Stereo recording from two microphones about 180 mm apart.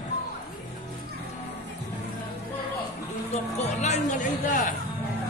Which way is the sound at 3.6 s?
40° left (ahead or behind).